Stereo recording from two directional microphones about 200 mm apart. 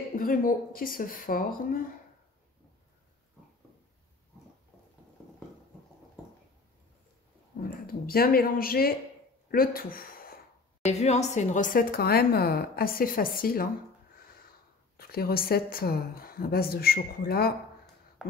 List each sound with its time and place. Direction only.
0.1 s a woman's voice: 45° left (ahead or behind)
7.8 s a woman's voice: 50° left (ahead or behind)
10.8 s a woman's voice: 35° left (ahead or behind)
15.0 s a woman's voice: 50° left (ahead or behind)